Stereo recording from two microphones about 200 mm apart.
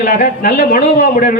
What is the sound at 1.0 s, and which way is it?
Speech, 35° left (ahead or behind).